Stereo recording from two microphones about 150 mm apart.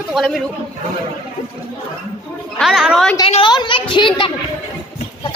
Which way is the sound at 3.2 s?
35° left (ahead or behind).